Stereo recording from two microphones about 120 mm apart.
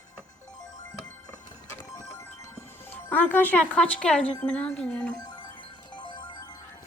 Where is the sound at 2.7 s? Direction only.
15° left (ahead or behind).